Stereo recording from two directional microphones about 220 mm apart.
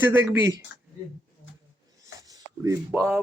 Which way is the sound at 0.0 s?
10° right (ahead or behind).